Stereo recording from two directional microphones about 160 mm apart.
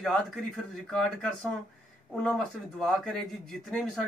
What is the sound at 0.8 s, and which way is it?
A man's voice, 5° left (ahead or behind).